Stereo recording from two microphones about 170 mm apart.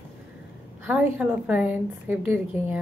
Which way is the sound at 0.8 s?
10° right (ahead or behind).